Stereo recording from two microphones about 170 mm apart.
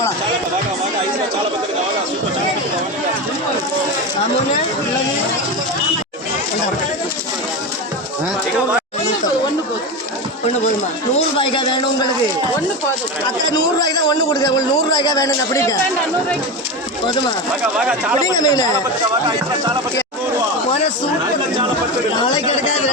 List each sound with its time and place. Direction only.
11.3 s a man's voice: 30° left (ahead or behind)
13.5 s a man's voice: 25° left (ahead or behind)
18.3 s a man's voice: 25° left (ahead or behind)